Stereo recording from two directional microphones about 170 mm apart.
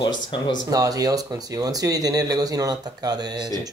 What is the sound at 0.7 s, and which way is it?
Speech, 20° right (ahead or behind).